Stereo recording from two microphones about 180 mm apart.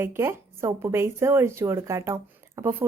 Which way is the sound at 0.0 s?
15° right (ahead or behind).